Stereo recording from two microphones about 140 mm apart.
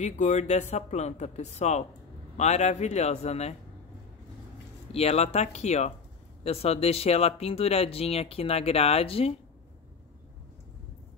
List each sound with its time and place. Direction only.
0.0 s speech: 55° left (ahead or behind)
4.9 s speech: 50° left (ahead or behind)